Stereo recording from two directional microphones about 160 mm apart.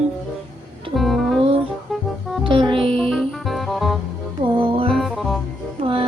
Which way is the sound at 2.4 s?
30° right (ahead or behind).